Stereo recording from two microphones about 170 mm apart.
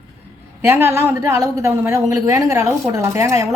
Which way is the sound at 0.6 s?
15° right (ahead or behind).